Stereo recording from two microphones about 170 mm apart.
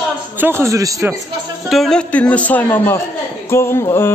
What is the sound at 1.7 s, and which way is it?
A man's voice, centre (ahead or behind).